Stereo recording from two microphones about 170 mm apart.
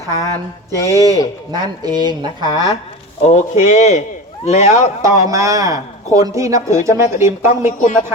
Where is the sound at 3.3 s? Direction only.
45° left (ahead or behind).